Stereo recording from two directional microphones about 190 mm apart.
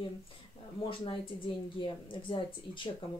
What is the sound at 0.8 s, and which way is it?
Speech, 25° left (ahead or behind).